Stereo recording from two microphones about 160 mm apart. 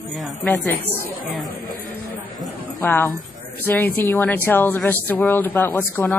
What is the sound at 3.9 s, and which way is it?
Speech, 10° left (ahead or behind).